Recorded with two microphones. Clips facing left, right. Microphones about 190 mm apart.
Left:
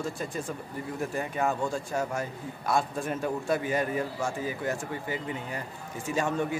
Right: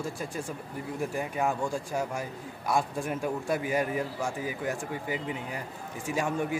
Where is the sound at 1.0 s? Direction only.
10° right (ahead or behind).